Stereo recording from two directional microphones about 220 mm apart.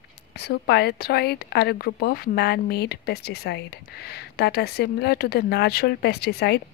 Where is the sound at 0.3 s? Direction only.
50° left (ahead or behind).